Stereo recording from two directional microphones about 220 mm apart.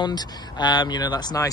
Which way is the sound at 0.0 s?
20° left (ahead or behind).